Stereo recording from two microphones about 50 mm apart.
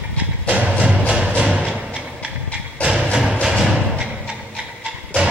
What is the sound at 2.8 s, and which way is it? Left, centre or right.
Music, centre.